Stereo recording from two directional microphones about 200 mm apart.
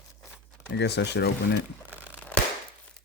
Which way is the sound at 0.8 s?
55° left (ahead or behind).